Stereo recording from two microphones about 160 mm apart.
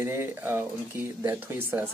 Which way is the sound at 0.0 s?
15° right (ahead or behind).